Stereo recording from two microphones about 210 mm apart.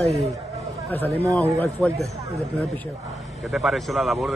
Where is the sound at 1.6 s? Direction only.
Centre (ahead or behind).